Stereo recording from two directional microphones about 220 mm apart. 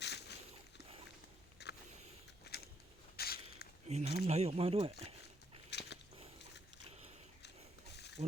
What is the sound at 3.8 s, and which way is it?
Speech, 30° right (ahead or behind).